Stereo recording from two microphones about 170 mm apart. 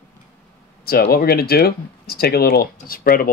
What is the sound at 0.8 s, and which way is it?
Speech, 65° left (ahead or behind).